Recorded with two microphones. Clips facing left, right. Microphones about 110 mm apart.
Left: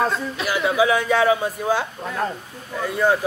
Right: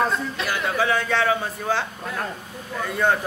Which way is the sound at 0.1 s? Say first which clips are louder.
Left 2 dB; 5° left (ahead or behind).